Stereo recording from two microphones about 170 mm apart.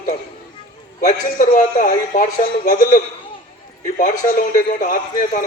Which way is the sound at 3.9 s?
55° left (ahead or behind).